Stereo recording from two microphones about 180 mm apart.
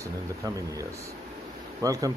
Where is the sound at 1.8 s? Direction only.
20° right (ahead or behind).